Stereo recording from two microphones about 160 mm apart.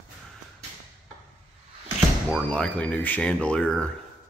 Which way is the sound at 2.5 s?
5° left (ahead or behind).